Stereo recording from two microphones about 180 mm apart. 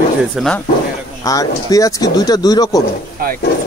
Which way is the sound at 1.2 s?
20° left (ahead or behind).